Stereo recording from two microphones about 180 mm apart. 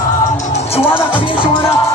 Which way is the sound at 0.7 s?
30° left (ahead or behind).